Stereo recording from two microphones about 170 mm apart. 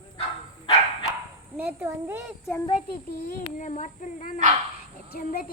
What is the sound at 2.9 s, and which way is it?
A child's voice, 50° left (ahead or behind).